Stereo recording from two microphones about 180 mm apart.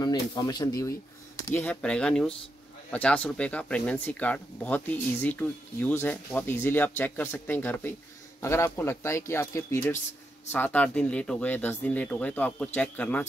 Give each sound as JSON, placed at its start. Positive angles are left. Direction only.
{"t": 0.0, "sound": "speech", "side_deg": 25}